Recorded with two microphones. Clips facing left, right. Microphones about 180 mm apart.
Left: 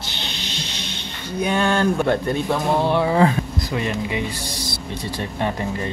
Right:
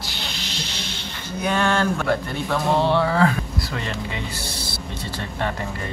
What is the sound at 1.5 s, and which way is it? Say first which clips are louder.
Speech: left 2 dB; 20° left (ahead or behind).